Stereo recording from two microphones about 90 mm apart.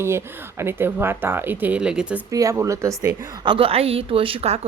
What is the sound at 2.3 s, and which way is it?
Speech, 40° right (ahead or behind).